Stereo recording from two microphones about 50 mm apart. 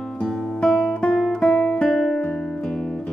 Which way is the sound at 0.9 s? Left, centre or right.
Centre.